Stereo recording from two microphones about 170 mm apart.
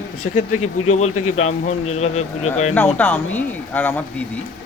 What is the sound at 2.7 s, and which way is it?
Speech, 10° left (ahead or behind).